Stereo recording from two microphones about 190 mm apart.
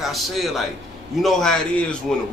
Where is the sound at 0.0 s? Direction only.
Centre (ahead or behind).